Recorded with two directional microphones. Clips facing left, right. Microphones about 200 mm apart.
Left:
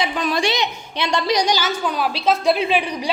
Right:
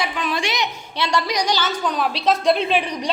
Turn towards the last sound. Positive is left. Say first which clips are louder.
# left 1 dB
turn(degrees=5)  # may be behind; listen again after turning